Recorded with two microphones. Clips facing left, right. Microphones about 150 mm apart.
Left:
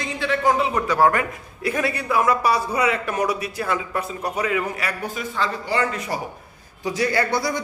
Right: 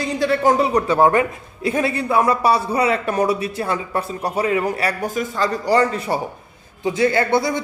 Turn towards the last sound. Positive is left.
turn(degrees=-25)  # may be behind; listen again after turning